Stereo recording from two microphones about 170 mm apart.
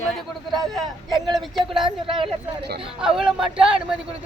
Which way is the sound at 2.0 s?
30° right (ahead or behind).